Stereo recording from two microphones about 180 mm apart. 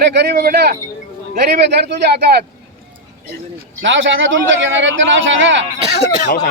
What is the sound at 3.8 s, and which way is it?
A man's voice, 90° right.